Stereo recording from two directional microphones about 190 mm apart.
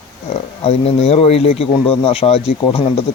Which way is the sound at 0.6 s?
30° left (ahead or behind).